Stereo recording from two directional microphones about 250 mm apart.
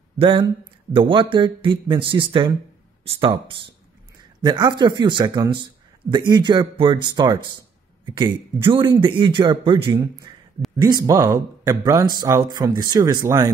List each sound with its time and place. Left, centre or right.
0.2 s a man's voice: centre